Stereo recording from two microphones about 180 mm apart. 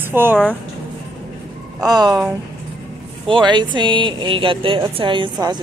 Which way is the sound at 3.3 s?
25° right (ahead or behind).